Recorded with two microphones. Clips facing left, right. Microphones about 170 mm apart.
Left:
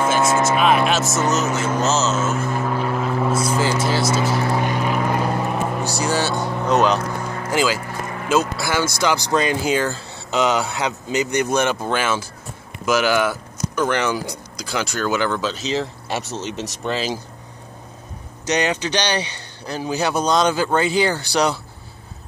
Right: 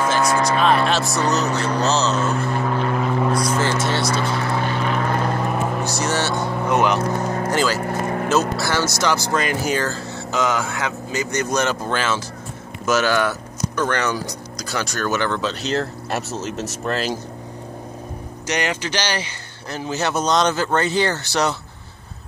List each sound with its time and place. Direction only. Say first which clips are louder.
0.2 s speech: left 1 dB; 25° left (ahead or behind)
0.6 s speech: left 1 dB; 15° left (ahead or behind)
1.4 s speech: even; centre (ahead or behind)
4.3 s vehicle: left 2 dB; 20° left (ahead or behind); by 6.0 s centre (ahead or behind)
6.2 s speech: even; centre (ahead or behind)
6.6 s speech: left 2 dB; 15° left (ahead or behind)
7.2 s speech: right 5 dB; 40° right (ahead or behind)
7.7 s vehicle: right 5 dB; 45° right (ahead or behind)
8.3 s speech: left 2 dB; 10° left (ahead or behind)
18.5 s speech: left 3 dB; 15° left (ahead or behind)